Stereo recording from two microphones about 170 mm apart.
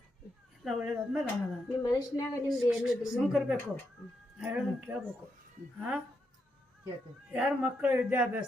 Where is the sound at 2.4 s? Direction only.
5° right (ahead or behind).